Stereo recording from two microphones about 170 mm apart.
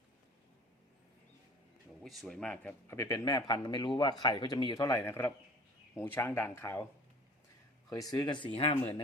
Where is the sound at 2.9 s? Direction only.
15° left (ahead or behind).